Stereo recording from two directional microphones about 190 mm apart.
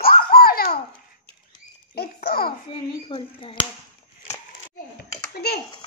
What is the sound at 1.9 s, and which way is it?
Babbling, 55° left (ahead or behind).